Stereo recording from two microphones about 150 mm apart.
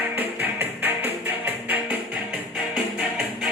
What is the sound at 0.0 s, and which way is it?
Music, 10° right (ahead or behind).